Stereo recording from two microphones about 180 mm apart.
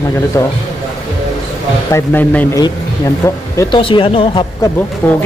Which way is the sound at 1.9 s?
10° left (ahead or behind).